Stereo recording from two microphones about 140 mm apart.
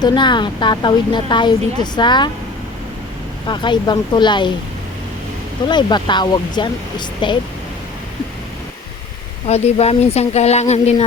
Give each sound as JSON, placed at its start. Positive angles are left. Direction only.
{"t": 0.0, "sound": "speech", "side_deg": 35}
{"t": 3.4, "sound": "speech", "side_deg": 35}
{"t": 5.6, "sound": "speech", "side_deg": 30}
{"t": 9.5, "sound": "speech", "side_deg": 50}